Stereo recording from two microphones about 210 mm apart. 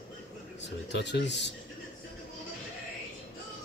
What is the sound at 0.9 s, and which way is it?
Speech, 55° left (ahead or behind).